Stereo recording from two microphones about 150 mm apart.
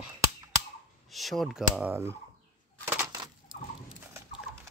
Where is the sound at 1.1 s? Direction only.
Centre (ahead or behind).